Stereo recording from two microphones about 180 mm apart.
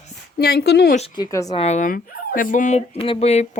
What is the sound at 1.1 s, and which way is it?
Speech, 20° left (ahead or behind).